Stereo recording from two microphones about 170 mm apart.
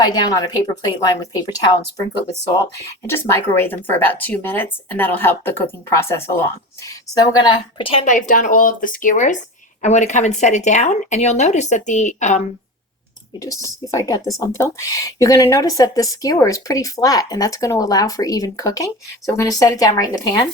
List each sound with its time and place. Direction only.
0.0 s speech: 25° left (ahead or behind)
3.1 s speech: 15° left (ahead or behind)
6.8 s speech: 20° left (ahead or behind)
8.0 s speech: 50° left (ahead or behind)
13.4 s speech: 20° left (ahead or behind)